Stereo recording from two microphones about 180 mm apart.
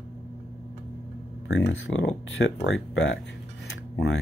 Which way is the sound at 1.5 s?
85° left.